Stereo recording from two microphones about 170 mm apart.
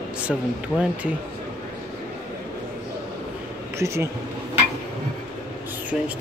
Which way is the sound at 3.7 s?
15° right (ahead or behind).